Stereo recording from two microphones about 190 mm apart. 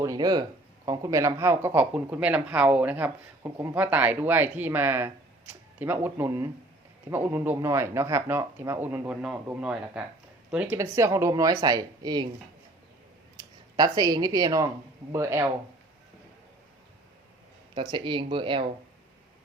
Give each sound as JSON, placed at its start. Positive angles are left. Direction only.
{"t": 0.0, "sound": "speech", "side_deg": -20}
{"t": 13.7, "sound": "speech", "side_deg": -20}
{"t": 17.7, "sound": "speech", "side_deg": -25}